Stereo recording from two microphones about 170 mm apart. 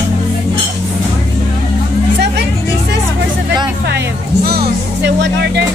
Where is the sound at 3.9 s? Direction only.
70° right (ahead or behind).